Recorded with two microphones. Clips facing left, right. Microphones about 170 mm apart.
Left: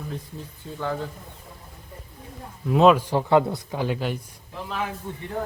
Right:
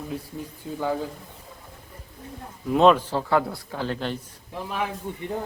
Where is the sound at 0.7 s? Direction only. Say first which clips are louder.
Right 4 dB; 10° right (ahead or behind).